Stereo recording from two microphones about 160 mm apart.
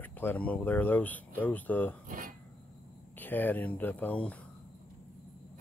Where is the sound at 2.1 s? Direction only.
60° right (ahead or behind).